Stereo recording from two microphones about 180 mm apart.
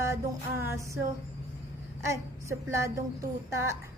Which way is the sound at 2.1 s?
15° right (ahead or behind).